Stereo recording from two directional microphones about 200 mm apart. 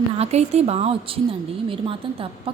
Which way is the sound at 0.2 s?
30° right (ahead or behind).